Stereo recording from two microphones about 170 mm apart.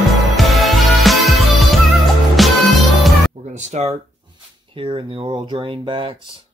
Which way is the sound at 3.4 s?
40° right (ahead or behind).